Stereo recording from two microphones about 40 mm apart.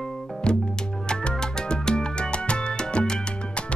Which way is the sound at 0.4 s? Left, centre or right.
Left.